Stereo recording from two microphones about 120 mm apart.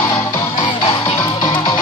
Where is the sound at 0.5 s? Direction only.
45° left (ahead or behind).